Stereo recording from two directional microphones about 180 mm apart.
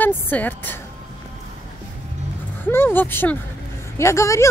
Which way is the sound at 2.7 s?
10° left (ahead or behind).